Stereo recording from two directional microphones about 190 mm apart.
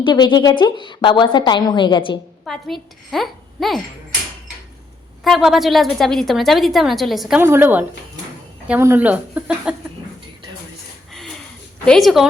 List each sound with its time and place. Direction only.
0.0 s a woman's voice: 25° left (ahead or behind)
2.4 s a woman's voice: centre (ahead or behind)
5.2 s a woman's voice: centre (ahead or behind)
11.9 s a woman's voice: centre (ahead or behind)